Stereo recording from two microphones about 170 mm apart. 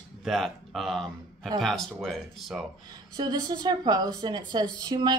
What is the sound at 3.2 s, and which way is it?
A woman's voice, 25° right (ahead or behind).